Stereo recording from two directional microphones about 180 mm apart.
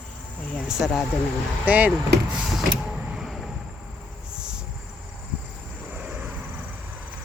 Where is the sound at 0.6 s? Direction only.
Centre (ahead or behind).